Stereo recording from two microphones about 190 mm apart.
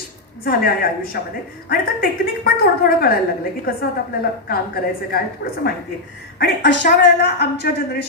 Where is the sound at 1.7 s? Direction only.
50° left (ahead or behind).